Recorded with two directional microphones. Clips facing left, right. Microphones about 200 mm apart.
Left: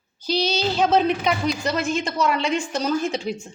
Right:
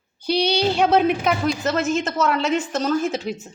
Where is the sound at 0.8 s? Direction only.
10° right (ahead or behind).